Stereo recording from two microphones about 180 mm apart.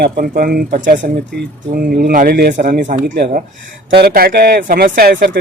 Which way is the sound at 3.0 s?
65° right (ahead or behind).